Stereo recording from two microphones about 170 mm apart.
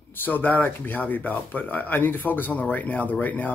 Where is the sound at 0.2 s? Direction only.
10° left (ahead or behind).